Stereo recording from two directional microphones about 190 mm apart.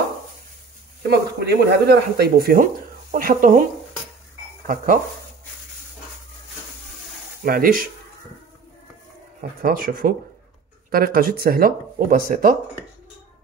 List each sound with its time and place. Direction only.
1.0 s speech: 60° right (ahead or behind); by 3.6 s 45° right (ahead or behind)
7.4 s speech: 50° right (ahead or behind)
9.4 s speech: 50° right (ahead or behind)